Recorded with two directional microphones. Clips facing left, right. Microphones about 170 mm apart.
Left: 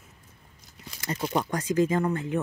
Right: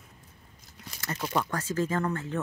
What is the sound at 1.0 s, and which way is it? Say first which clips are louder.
A woman's voice: left 2 dB; 20° left (ahead or behind).